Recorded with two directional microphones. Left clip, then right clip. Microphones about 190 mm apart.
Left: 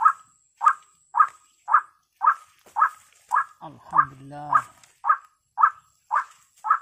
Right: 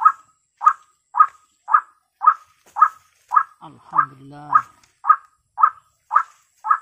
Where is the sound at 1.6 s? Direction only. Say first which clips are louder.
Right 3 dB; 10° left (ahead or behind).